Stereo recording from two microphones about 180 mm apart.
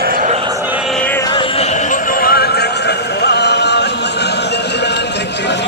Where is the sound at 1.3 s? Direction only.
30° left (ahead or behind); by 3.9 s 70° left (ahead or behind).